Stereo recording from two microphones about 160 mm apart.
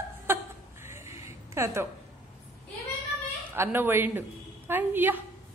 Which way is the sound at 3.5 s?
15° right (ahead or behind).